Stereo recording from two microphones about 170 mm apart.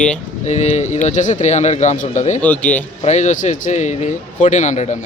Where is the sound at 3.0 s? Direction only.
45° left (ahead or behind).